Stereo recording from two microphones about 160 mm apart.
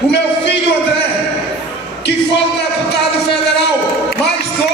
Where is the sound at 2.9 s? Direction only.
90° left.